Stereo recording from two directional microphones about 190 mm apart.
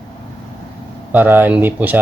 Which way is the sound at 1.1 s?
10° right (ahead or behind).